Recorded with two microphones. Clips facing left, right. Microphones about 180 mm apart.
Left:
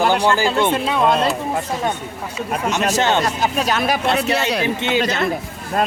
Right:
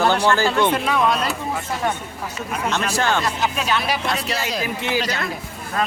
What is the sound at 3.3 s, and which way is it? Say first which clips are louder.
Speech: left 3 dB; 40° left (ahead or behind).